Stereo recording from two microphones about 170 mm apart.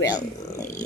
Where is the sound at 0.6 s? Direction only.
45° left (ahead or behind).